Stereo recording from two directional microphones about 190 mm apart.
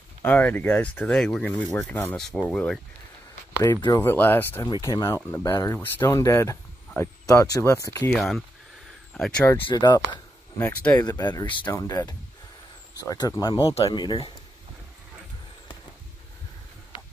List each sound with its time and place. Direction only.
0.2 s speech: 10° left (ahead or behind)
3.6 s speech: 20° left (ahead or behind)
8.1 s speech: centre (ahead or behind)
9.6 s speech: 25° left (ahead or behind)
10.6 s speech: 5° left (ahead or behind)
11.0 s speech: 20° left (ahead or behind)